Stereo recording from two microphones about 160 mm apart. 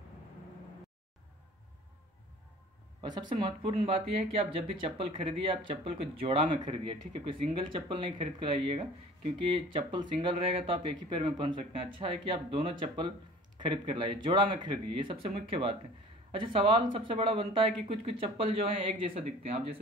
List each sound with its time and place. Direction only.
3.0 s speech: 30° right (ahead or behind)